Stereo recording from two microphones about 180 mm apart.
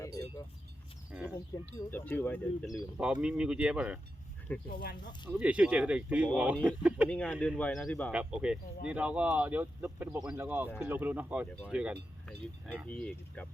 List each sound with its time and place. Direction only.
0.2 s speech: 15° left (ahead or behind)
1.1 s speech: 5° right (ahead or behind)
1.9 s speech: 10° left (ahead or behind)
3.0 s speech: 5° right (ahead or behind)
4.5 s speech: 10° left (ahead or behind)
5.3 s speech: 5° right (ahead or behind)
7.1 s speech: 5° left (ahead or behind)
8.1 s speech: 5° right (ahead or behind)